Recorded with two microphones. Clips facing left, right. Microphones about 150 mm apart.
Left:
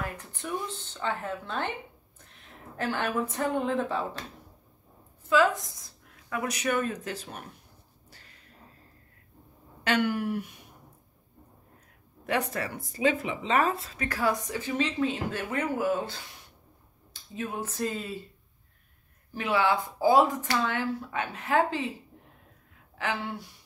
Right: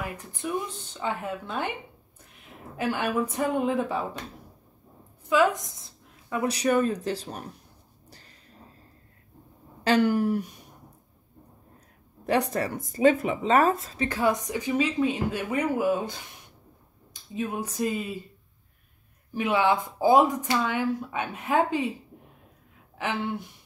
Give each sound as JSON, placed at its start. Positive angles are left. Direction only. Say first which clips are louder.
{"t": 0.0, "sound": "speech", "louder": "right 3 dB", "side_deg": -10}
{"t": 5.2, "sound": "speech", "louder": "right 1 dB", "side_deg": -15}
{"t": 6.3, "sound": "speech", "louder": "right 5 dB", "side_deg": -30}
{"t": 9.8, "sound": "speech", "louder": "right 5 dB", "side_deg": -35}
{"t": 12.3, "sound": "speech", "louder": "right 5 dB", "side_deg": -35}
{"t": 13.9, "sound": "speech", "louder": "right 3 dB", "side_deg": -25}
{"t": 19.3, "sound": "speech", "louder": "right 2 dB", "side_deg": -20}
{"t": 22.9, "sound": "speech", "louder": "right 3 dB", "side_deg": -20}